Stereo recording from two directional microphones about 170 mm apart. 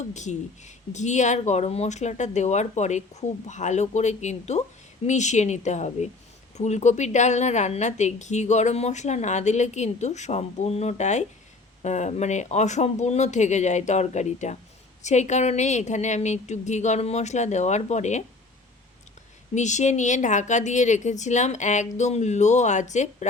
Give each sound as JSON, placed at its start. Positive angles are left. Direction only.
{"t": 0.1, "sound": "a woman's voice", "side_deg": 45}
{"t": 19.5, "sound": "a woman's voice", "side_deg": 45}